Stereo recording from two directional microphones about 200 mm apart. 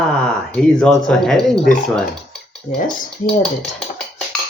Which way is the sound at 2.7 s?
40° left (ahead or behind).